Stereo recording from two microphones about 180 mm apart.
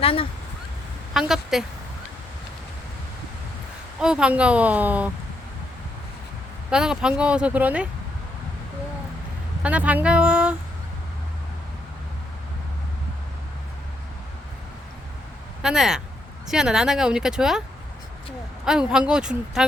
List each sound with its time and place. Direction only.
0.0 s speech: 30° left (ahead or behind)
1.1 s a woman's voice: centre (ahead or behind)
4.0 s speech: 5° right (ahead or behind)
6.7 s speech: 5° right (ahead or behind)
9.6 s speech: 10° right (ahead or behind)
15.6 s speech: 5° right (ahead or behind)
18.6 s speech: 5° right (ahead or behind)